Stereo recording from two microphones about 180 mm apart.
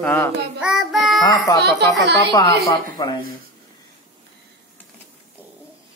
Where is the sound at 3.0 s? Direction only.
25° left (ahead or behind).